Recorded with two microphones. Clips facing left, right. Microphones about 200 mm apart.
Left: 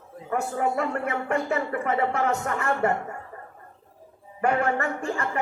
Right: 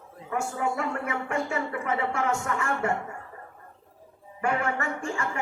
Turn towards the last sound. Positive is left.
turn(degrees=40)  # may be behind; listen again after turning